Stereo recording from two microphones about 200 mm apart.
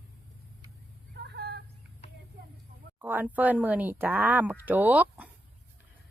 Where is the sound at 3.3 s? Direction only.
10° right (ahead or behind).